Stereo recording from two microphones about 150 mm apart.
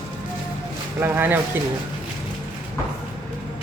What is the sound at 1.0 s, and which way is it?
Speech, 15° right (ahead or behind).